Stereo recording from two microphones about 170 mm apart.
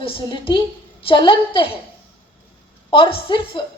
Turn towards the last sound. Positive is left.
turn(degrees=30)  # may be behind; listen again after turning